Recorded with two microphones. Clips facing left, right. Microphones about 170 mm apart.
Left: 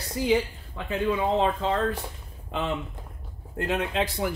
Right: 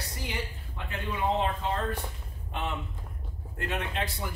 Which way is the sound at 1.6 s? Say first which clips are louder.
Left 5 dB; 90° left.